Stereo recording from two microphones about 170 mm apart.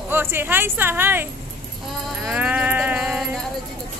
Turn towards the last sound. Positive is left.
turn(degrees=0)  # may be behind; listen again after turning